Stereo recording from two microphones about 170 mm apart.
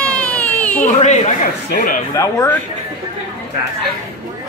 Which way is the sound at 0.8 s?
45° left (ahead or behind).